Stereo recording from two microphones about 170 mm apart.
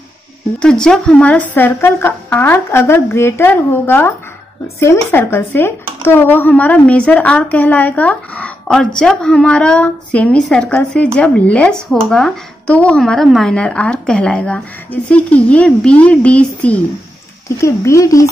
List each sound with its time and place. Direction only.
0.6 s speech: 5° left (ahead or behind)